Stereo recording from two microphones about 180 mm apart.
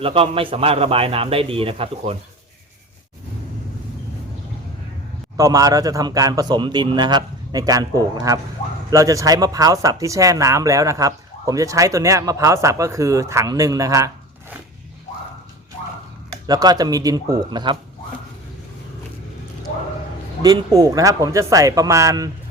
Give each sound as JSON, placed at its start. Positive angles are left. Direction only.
{"t": 0.0, "sound": "speech", "side_deg": -30}
{"t": 5.4, "sound": "a man's voice", "side_deg": -20}
{"t": 16.5, "sound": "a man's voice", "side_deg": -20}
{"t": 20.7, "sound": "speech", "side_deg": -20}